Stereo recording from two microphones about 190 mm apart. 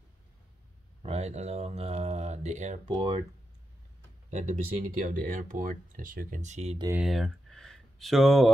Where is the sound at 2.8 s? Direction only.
25° right (ahead or behind).